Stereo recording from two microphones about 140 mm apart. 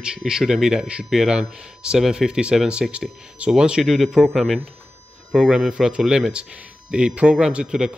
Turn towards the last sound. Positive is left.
turn(degrees=-5)  # may be behind; listen again after turning